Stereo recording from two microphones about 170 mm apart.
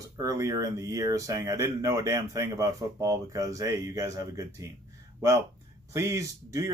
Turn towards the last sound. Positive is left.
turn(degrees=-20)  # may be behind; listen again after turning